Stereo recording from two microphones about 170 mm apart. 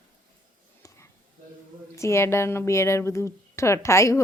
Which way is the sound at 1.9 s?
15° left (ahead or behind).